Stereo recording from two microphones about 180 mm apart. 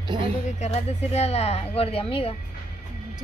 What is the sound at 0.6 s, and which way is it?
Speech, 35° left (ahead or behind).